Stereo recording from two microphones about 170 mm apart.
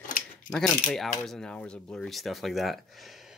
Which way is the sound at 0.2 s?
60° left (ahead or behind).